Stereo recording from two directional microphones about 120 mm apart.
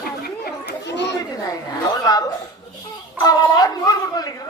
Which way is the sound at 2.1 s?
30° left (ahead or behind).